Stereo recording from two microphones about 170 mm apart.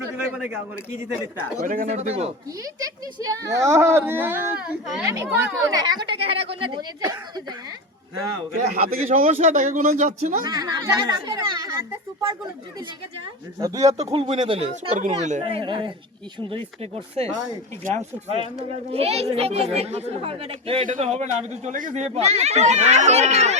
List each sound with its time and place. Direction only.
1.6 s speech: 55° right (ahead or behind)
2.8 s speech: 20° right (ahead or behind)
7.0 s speech: 20° right (ahead or behind)
8.8 s speech: 55° right (ahead or behind)
10.4 s speech: 25° right (ahead or behind)
13.6 s speech: 20° right (ahead or behind)
13.8 s speech: 40° right (ahead or behind)
14.9 s speech: 45° right (ahead or behind)
20.8 s speech: 50° right (ahead or behind)